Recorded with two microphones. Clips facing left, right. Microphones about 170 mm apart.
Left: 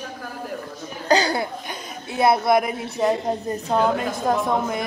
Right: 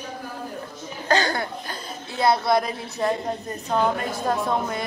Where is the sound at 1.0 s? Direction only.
15° left (ahead or behind).